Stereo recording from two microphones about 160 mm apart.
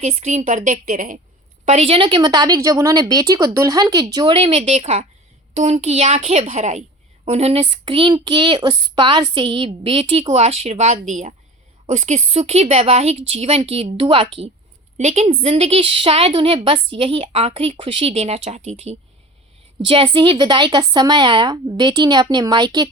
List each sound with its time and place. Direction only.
0.0 s a woman's voice: 45° right (ahead or behind)
1.6 s a woman's voice: 45° right (ahead or behind)
2.0 s a woman's voice: 30° right (ahead or behind)
14.9 s a woman's voice: 45° right (ahead or behind); by 22.9 s 25° right (ahead or behind)